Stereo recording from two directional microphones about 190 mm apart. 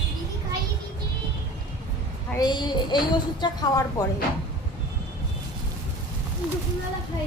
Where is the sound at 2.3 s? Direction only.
25° left (ahead or behind).